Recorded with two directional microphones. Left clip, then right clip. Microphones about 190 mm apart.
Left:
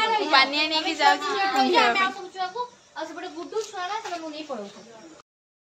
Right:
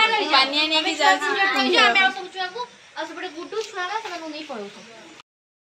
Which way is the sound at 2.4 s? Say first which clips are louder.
Left 2 dB; 60° left (ahead or behind).